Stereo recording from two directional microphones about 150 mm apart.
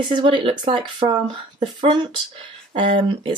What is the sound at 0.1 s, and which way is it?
Speech, 30° right (ahead or behind).